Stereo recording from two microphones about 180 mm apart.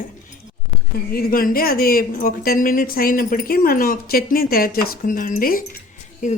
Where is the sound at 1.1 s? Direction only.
55° left (ahead or behind).